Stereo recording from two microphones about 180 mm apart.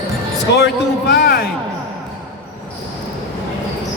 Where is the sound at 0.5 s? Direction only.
70° left (ahead or behind).